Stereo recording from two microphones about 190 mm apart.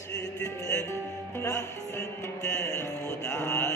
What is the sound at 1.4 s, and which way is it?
Music, 15° left (ahead or behind).